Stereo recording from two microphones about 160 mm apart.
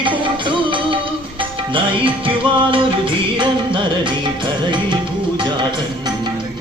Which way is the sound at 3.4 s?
30° right (ahead or behind).